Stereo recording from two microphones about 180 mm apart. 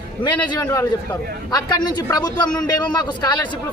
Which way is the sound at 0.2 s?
25° left (ahead or behind).